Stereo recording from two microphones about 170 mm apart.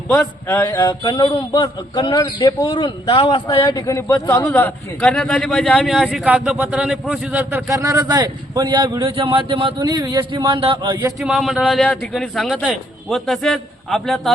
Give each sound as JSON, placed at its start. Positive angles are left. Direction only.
{"t": 0.2, "sound": "a sound", "side_deg": 10}
{"t": 0.8, "sound": "a man's voice", "side_deg": 25}
{"t": 7.7, "sound": "a man's voice", "side_deg": -20}
{"t": 11.2, "sound": "a man's voice", "side_deg": 0}